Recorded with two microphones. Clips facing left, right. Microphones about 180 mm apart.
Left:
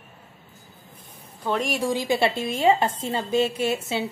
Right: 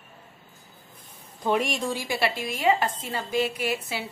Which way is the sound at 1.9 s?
20° left (ahead or behind).